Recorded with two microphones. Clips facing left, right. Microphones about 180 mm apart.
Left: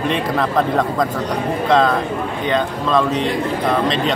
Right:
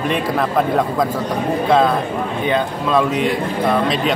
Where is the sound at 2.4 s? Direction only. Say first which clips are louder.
Even; 10° right (ahead or behind).